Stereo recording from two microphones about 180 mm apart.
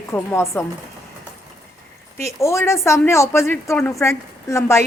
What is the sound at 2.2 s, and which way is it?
Speech, 15° left (ahead or behind).